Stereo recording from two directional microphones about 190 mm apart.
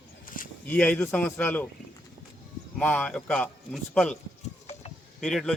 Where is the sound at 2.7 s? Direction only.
5° left (ahead or behind).